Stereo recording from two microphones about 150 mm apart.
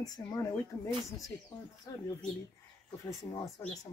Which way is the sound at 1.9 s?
25° left (ahead or behind).